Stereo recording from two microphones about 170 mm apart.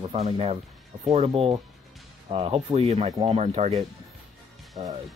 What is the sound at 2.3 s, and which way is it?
Speech, 35° right (ahead or behind).